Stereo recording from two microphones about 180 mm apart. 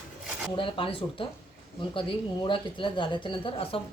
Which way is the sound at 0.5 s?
30° left (ahead or behind).